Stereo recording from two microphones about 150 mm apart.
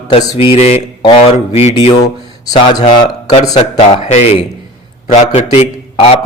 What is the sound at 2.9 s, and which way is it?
Speech, 30° left (ahead or behind).